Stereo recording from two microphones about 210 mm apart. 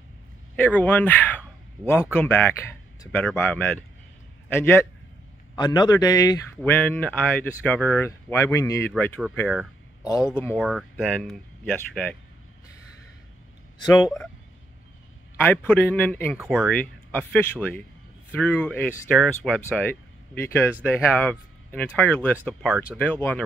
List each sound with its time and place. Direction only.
0.6 s speech: 10° left (ahead or behind)
13.7 s speech: 20° left (ahead or behind)
15.4 s speech: 10° left (ahead or behind)
22.9 s speech: 10° left (ahead or behind)